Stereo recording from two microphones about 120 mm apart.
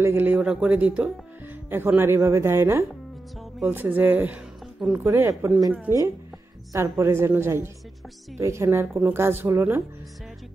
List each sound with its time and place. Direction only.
0.0 s speech: 20° right (ahead or behind)
4.7 s speech: 5° right (ahead or behind)
5.0 s speech: 25° right (ahead or behind)